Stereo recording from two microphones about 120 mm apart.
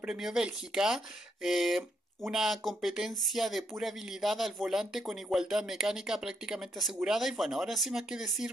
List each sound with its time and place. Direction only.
0.0 s speech: 5° right (ahead or behind)